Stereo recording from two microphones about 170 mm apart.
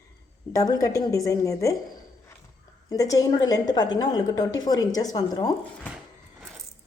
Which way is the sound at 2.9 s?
20° left (ahead or behind).